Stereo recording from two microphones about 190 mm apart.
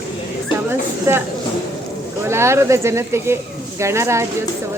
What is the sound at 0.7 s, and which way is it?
Speech, 10° right (ahead or behind).